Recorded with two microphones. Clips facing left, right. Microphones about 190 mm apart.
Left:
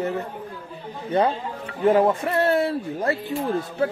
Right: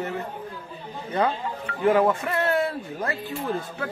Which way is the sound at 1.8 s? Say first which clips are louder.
Left 2 dB; 30° left (ahead or behind).